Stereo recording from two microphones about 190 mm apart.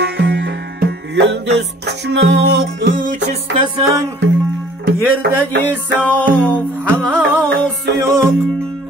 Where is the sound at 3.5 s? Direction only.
25° right (ahead or behind).